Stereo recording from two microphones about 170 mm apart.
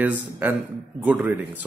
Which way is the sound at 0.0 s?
10° right (ahead or behind).